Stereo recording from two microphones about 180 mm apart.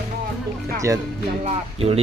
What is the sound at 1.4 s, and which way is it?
Speech, 35° right (ahead or behind).